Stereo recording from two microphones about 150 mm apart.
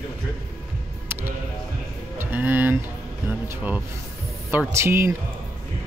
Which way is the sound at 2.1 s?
15° right (ahead or behind).